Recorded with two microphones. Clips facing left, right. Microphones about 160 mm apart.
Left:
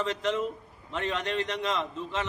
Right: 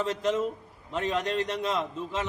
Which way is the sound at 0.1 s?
40° right (ahead or behind).